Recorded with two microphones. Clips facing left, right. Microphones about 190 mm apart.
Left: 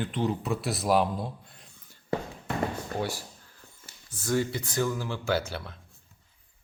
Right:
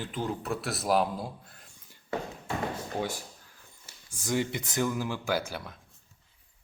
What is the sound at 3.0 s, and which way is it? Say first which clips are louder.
Speech: left 1 dB; 15° right (ahead or behind).